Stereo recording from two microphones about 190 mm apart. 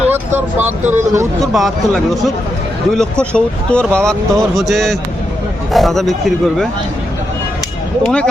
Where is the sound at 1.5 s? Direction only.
Centre (ahead or behind).